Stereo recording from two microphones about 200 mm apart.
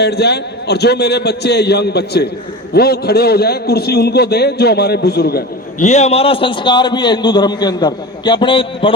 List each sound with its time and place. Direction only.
0.0 s a man's voice: 55° left (ahead or behind)
5.8 s a man's voice: 35° left (ahead or behind)